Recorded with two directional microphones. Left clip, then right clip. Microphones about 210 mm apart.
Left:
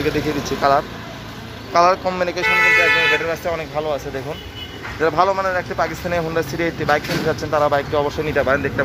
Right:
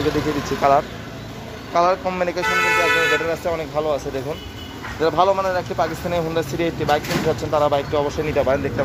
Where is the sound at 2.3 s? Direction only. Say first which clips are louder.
Left 5 dB; 50° right (ahead or behind).